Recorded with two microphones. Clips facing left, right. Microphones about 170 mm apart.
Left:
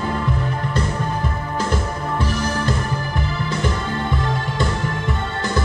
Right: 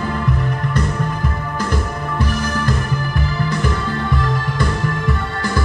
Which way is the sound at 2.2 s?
30° left (ahead or behind).